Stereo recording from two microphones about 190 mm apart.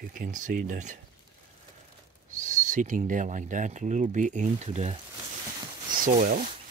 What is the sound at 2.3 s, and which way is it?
Speech, 40° right (ahead or behind).